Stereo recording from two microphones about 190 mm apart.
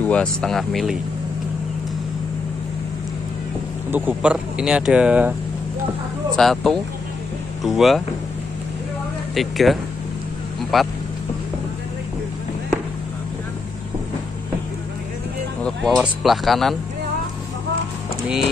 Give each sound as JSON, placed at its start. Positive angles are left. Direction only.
{"t": 0.0, "sound": "speech", "side_deg": 5}
{"t": 3.9, "sound": "speech", "side_deg": -10}
{"t": 6.3, "sound": "speech", "side_deg": 0}
{"t": 9.3, "sound": "speech", "side_deg": 0}
{"t": 15.6, "sound": "speech", "side_deg": 5}